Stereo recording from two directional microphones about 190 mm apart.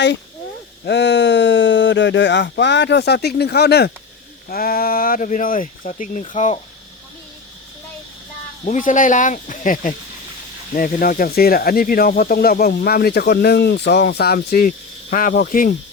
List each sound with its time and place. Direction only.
0.9 s speech: 65° left (ahead or behind); by 6.6 s 40° left (ahead or behind)
8.6 s speech: 40° left (ahead or behind)